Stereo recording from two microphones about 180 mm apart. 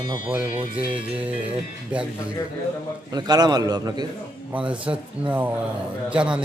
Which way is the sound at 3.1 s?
20° right (ahead or behind).